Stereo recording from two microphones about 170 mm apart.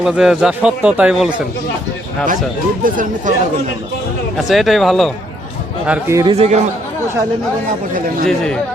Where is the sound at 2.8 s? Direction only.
50° right (ahead or behind).